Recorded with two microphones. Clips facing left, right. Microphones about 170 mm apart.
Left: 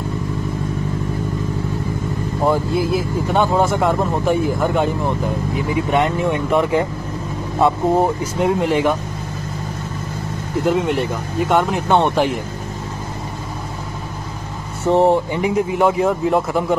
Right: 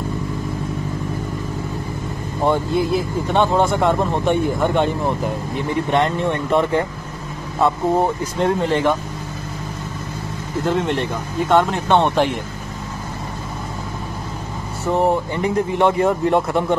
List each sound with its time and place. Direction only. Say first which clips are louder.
2.4 s speech: even; 5° left (ahead or behind)
8.0 s speech: left 1 dB; 10° left (ahead or behind)
10.7 s speech: left 2 dB; 5° left (ahead or behind)
14.9 s speech: left 4 dB; 20° left (ahead or behind)
15.4 s speech: right 1 dB; 5° left (ahead or behind)